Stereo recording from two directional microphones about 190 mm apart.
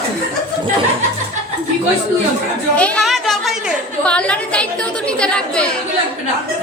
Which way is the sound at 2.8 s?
5° left (ahead or behind).